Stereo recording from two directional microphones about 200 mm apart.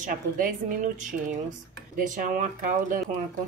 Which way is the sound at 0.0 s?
40° right (ahead or behind).